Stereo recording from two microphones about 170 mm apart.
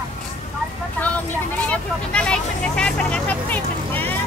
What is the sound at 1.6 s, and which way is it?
Vehicle, 5° left (ahead or behind).